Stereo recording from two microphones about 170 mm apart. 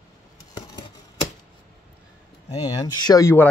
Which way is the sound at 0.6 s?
25° left (ahead or behind).